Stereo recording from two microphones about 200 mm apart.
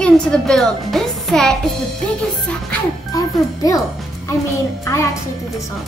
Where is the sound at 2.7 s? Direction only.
15° left (ahead or behind).